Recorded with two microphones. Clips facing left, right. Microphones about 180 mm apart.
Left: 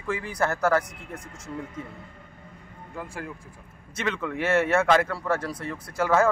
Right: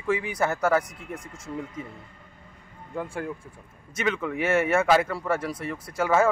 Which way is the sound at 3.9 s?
Centre (ahead or behind).